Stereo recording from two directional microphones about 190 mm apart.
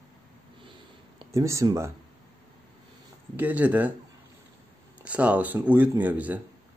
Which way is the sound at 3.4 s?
10° right (ahead or behind).